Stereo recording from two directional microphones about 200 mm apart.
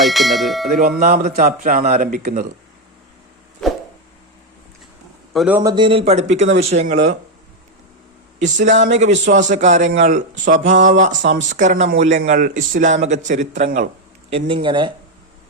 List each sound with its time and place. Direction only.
0.0 s bell: centre (ahead or behind)
0.8 s a man's voice: 45° right (ahead or behind)
5.3 s a man's voice: centre (ahead or behind)
5.5 s speech: 20° right (ahead or behind); by 7.2 s 35° right (ahead or behind)
8.4 s speech: 40° right (ahead or behind)
11.1 s speech: 65° right (ahead or behind)
11.3 s speech: 40° right (ahead or behind)
14.3 s speech: 30° right (ahead or behind)